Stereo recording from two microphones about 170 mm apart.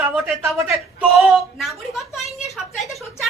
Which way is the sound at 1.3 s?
Centre (ahead or behind).